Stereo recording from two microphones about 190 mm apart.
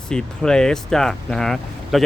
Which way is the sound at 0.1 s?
5° left (ahead or behind).